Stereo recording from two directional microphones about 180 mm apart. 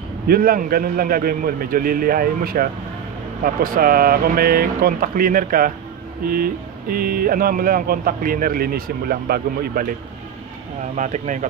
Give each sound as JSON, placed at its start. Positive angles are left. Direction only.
{"t": 0.3, "sound": "speech", "side_deg": -55}
{"t": 11.0, "sound": "speech", "side_deg": -40}